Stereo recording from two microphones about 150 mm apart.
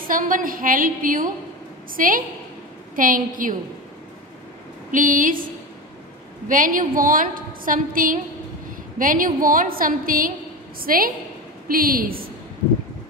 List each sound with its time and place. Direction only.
0.0 s a woman's voice: 65° right (ahead or behind)
4.9 s a woman's voice: 65° right (ahead or behind)